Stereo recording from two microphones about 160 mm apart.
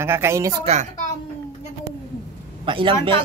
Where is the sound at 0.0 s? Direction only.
15° right (ahead or behind).